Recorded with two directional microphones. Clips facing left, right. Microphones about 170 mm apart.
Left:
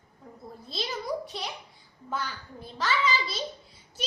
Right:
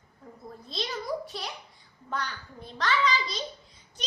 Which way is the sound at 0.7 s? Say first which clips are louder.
Even; centre (ahead or behind).